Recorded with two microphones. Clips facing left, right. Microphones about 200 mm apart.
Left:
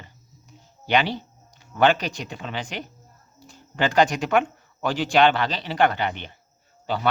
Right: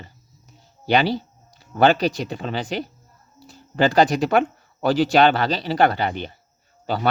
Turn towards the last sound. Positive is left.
turn(degrees=-40)  # may be behind; listen again after turning